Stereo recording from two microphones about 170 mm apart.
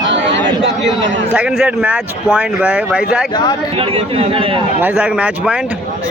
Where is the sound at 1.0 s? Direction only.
90° right.